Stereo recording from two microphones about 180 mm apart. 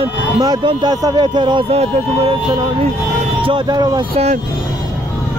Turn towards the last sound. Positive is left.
turn(degrees=-35)  # may be behind; listen again after turning